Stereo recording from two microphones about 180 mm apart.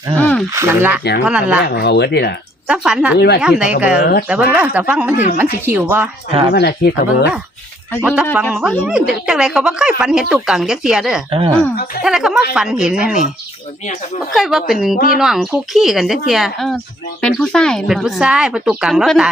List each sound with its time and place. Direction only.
0.2 s a sound: 5° left (ahead or behind)
0.5 s speech: 15° right (ahead or behind)
1.6 s speech: 65° left (ahead or behind)
2.6 s speech: 5° right (ahead or behind)
3.2 s speech: 65° left (ahead or behind)
3.4 s speech: 5° right (ahead or behind)
6.5 s speech: 65° left (ahead or behind)
8.4 s speech: 5° right (ahead or behind)
11.3 s speech: 30° right (ahead or behind)
12.0 s speech: 5° right (ahead or behind)
14.3 s speech: centre (ahead or behind)
14.9 s speech: 50° left (ahead or behind)
15.2 s speech: centre (ahead or behind)